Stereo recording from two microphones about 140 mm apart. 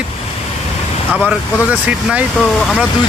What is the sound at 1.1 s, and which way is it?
Speech, 5° right (ahead or behind).